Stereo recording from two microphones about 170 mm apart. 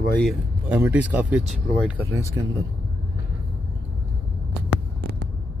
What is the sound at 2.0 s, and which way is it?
Speech, 15° right (ahead or behind).